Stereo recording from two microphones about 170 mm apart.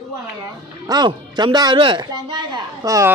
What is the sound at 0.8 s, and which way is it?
Speech, 25° right (ahead or behind).